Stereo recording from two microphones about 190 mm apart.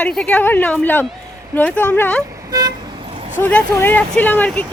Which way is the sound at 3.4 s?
10° left (ahead or behind).